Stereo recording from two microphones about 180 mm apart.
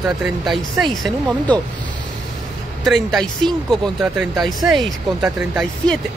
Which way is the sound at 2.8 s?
Centre (ahead or behind).